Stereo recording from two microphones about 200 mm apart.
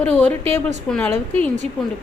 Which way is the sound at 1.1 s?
35° right (ahead or behind).